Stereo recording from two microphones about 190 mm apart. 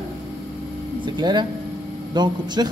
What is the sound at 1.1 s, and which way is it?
Speech, 25° right (ahead or behind).